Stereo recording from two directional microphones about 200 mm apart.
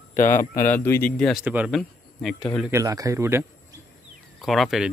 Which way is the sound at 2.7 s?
15° right (ahead or behind).